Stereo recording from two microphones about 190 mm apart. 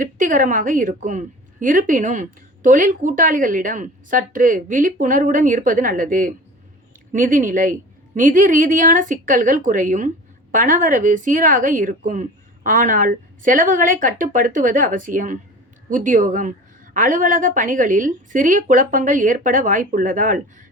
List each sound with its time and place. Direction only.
0.0 s a woman's voice: 45° right (ahead or behind)